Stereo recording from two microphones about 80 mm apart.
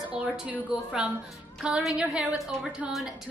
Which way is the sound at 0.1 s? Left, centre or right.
Centre.